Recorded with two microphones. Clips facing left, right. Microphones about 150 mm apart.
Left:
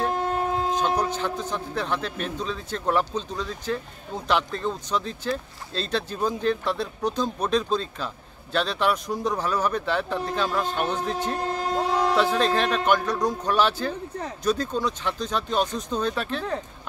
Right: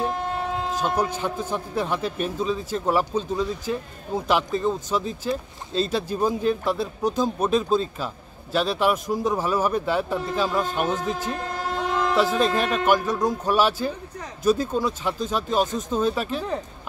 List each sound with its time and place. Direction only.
0.8 s speech: 10° right (ahead or behind)
11.7 s a sound: 35° left (ahead or behind)
12.2 s speech: 5° right (ahead or behind)